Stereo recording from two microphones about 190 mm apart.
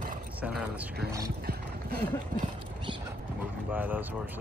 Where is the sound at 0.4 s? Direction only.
5° right (ahead or behind).